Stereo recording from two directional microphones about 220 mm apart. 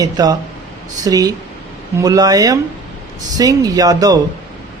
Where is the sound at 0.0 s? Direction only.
15° right (ahead or behind).